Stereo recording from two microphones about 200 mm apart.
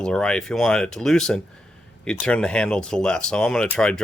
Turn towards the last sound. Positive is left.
turn(degrees=5)  # may be behind; listen again after turning